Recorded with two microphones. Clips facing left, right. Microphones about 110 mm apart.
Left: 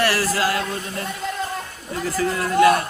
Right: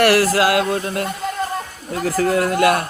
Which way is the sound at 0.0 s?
65° right (ahead or behind).